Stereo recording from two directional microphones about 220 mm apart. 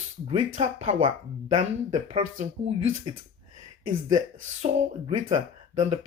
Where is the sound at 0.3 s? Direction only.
30° right (ahead or behind).